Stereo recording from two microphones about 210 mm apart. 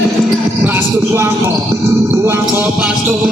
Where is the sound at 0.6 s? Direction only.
10° right (ahead or behind).